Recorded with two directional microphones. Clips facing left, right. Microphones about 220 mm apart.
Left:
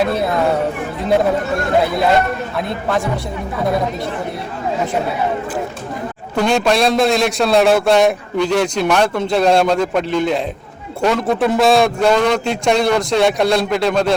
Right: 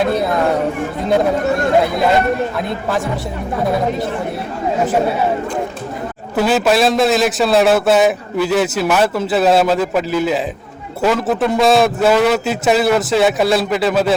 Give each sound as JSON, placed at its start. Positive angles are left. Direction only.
{"t": 2.6, "sound": "a man's voice", "side_deg": 0}
{"t": 6.3, "sound": "a man's voice", "side_deg": -5}